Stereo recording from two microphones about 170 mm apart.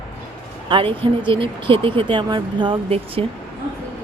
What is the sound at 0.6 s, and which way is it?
Speech, 30° right (ahead or behind).